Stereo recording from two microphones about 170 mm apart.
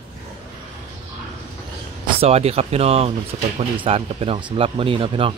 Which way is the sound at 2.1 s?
40° right (ahead or behind).